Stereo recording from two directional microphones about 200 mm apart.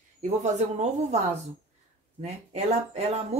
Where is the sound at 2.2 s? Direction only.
35° right (ahead or behind).